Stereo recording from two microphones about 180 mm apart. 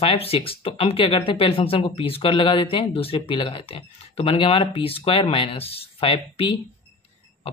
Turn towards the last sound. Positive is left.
turn(degrees=30)  # may be behind; listen again after turning